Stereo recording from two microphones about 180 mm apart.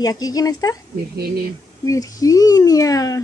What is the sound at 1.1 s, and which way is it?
Speech, 60° right (ahead or behind).